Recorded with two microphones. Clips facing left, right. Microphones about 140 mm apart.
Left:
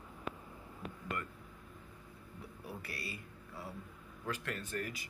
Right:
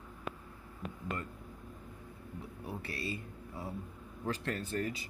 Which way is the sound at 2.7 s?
25° right (ahead or behind).